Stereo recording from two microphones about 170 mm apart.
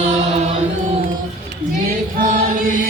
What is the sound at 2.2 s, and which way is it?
Choir, 55° right (ahead or behind).